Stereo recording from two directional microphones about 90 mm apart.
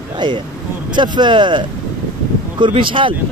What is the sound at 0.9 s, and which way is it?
Speech, 55° right (ahead or behind).